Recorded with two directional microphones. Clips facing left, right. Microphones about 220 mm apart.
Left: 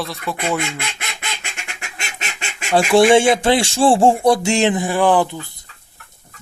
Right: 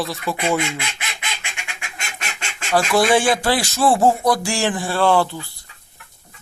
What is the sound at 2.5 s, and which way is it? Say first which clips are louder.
Goose: left 3 dB; 15° left (ahead or behind).